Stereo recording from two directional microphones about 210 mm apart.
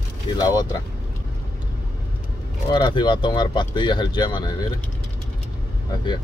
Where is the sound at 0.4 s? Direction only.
20° left (ahead or behind).